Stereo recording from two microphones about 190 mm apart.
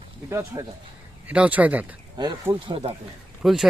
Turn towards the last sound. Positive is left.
turn(degrees=0)  # may be behind; listen again after turning